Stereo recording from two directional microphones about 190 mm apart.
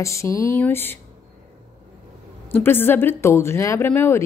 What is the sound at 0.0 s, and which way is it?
Speech, 15° left (ahead or behind).